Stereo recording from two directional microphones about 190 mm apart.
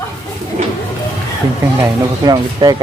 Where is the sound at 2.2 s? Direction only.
20° right (ahead or behind).